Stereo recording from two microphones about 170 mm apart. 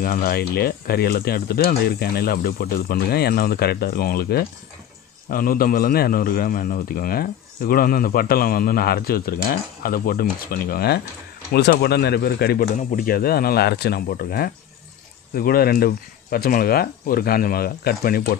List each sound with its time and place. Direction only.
0.0 s a man's voice: 60° left (ahead or behind)
12.7 s a man's voice: 55° left (ahead or behind)